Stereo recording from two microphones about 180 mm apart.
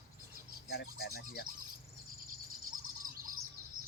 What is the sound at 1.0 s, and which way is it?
Speech, 60° left (ahead or behind).